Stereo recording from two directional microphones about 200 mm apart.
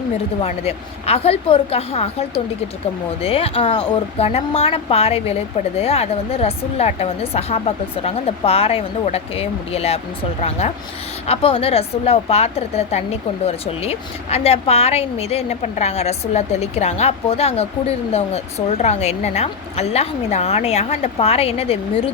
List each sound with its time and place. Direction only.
0.4 s speech: 30° left (ahead or behind)
11.3 s speech: 30° left (ahead or behind)